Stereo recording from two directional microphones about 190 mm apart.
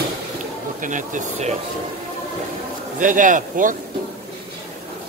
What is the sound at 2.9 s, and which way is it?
Speech, 45° right (ahead or behind).